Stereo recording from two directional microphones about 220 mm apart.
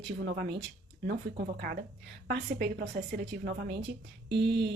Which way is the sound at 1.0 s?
45° right (ahead or behind).